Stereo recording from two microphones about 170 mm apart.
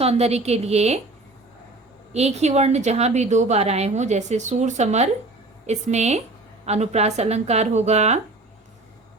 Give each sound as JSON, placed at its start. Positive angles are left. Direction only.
{"t": 0.0, "sound": "a woman's voice", "side_deg": -40}
{"t": 2.1, "sound": "a woman's voice", "side_deg": -40}